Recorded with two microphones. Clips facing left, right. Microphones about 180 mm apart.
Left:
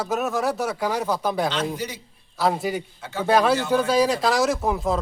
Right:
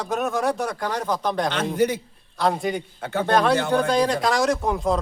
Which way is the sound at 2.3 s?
5° left (ahead or behind).